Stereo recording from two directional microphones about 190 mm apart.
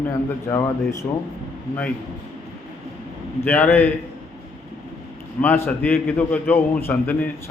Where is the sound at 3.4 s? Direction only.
10° left (ahead or behind).